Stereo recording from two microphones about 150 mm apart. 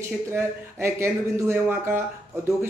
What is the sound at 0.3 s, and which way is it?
A man's voice, 15° right (ahead or behind).